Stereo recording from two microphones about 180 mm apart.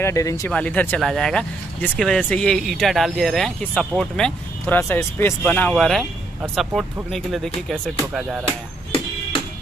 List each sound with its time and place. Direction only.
0.0 s speech: 15° left (ahead or behind); by 8.4 s centre (ahead or behind)